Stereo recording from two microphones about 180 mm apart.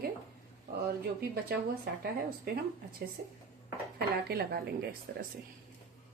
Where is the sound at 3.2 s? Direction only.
50° right (ahead or behind).